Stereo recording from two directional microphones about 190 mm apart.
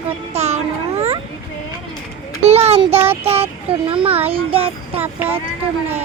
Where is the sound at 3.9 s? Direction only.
30° right (ahead or behind).